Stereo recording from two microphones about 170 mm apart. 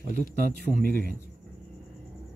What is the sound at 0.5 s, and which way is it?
Speech, 60° right (ahead or behind).